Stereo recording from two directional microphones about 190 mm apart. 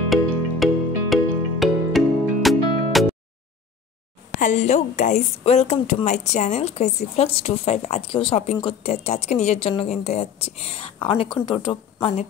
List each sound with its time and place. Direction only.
0.1 s music: centre (ahead or behind)
4.4 s a woman's voice: 40° left (ahead or behind)